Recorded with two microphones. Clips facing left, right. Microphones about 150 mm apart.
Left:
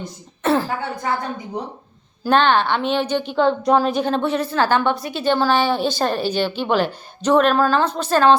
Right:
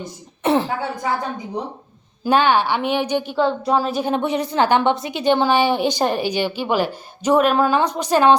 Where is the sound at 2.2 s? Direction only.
10° right (ahead or behind).